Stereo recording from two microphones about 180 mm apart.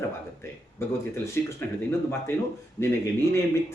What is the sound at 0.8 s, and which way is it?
Speech, 15° left (ahead or behind).